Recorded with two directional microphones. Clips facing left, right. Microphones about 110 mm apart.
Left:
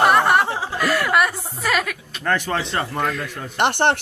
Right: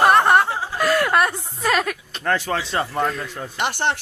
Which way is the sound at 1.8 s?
10° right (ahead or behind).